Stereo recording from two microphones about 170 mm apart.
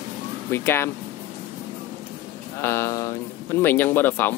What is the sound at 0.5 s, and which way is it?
Speech, 15° left (ahead or behind).